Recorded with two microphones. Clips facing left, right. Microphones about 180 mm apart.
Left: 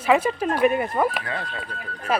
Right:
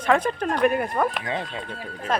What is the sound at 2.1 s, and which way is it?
Speech, 10° left (ahead or behind).